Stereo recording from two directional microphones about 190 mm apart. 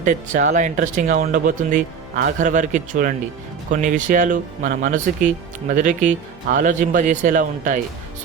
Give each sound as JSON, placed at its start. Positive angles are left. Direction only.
{"t": 0.0, "sound": "speech", "side_deg": -40}